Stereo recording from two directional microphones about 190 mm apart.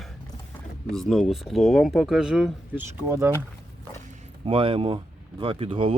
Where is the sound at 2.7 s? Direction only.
10° right (ahead or behind).